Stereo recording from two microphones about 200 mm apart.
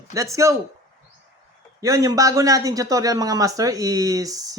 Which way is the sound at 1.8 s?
15° right (ahead or behind).